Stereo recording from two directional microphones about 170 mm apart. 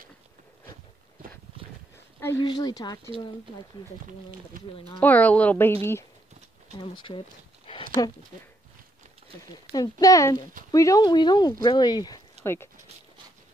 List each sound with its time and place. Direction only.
2.1 s a sound: 15° left (ahead or behind)
2.4 s speech: 25° left (ahead or behind)
4.7 s speech: 30° left (ahead or behind)
5.0 s a woman's voice: 10° left (ahead or behind)
6.8 s speech: 30° left (ahead or behind)
9.7 s a woman's voice: 20° left (ahead or behind)